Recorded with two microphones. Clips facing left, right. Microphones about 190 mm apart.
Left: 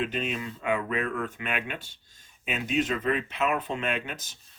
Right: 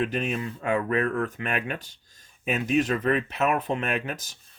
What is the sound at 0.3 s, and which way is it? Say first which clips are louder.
Speech: right 2 dB; 45° right (ahead or behind).